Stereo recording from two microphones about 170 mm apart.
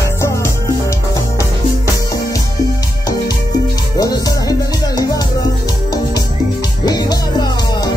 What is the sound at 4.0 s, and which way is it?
Music, 20° left (ahead or behind).